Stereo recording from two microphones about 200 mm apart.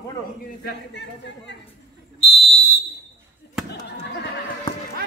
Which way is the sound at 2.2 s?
30° left (ahead or behind).